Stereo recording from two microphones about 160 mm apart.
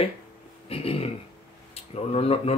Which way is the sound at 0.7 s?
35° left (ahead or behind).